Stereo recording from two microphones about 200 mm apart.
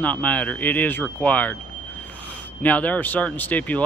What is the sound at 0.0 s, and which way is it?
Speech, 5° left (ahead or behind).